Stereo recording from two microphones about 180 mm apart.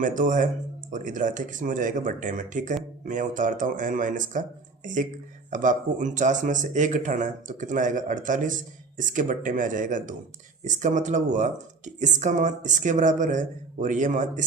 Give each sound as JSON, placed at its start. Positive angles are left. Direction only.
{"t": 0.0, "sound": "speech", "side_deg": -45}